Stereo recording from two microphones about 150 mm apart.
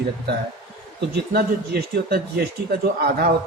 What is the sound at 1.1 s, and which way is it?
Speech, 90° right.